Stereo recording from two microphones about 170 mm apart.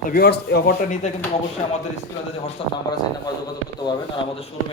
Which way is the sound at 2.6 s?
35° left (ahead or behind).